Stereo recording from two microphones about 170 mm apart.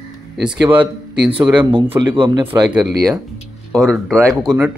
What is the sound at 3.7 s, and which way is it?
Speech, 5° left (ahead or behind).